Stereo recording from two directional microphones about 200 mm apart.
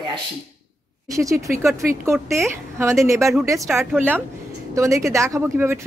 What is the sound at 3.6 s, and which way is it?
Speech, centre (ahead or behind).